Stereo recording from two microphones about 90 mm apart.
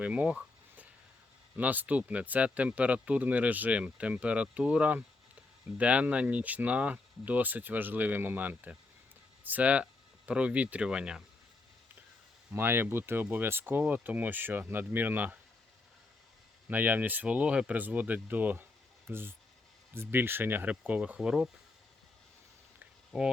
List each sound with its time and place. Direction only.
0.0 s a sound: 15° right (ahead or behind)
1.5 s speech: 20° right (ahead or behind)
12.5 s speech: 25° right (ahead or behind)
16.6 s speech: 20° right (ahead or behind)
23.1 s speech: 5° right (ahead or behind)